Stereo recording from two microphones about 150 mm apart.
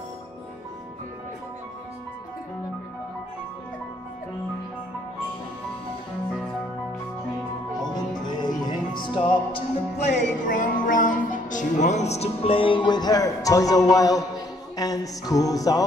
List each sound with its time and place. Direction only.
8.3 s music: 30° left (ahead or behind)
10.0 s speech: 60° left (ahead or behind); by 14.2 s 25° left (ahead or behind)
14.8 s music: 25° left (ahead or behind)